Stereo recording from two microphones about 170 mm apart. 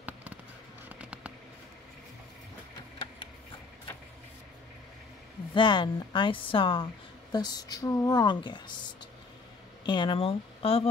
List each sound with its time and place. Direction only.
0.8 s a sound: 10° right (ahead or behind)
5.5 s a woman's voice: 30° left (ahead or behind)
9.8 s speech: 30° left (ahead or behind)